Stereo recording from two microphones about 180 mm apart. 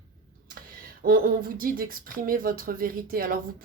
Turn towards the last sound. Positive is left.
turn(degrees=-55)  # may be behind; listen again after turning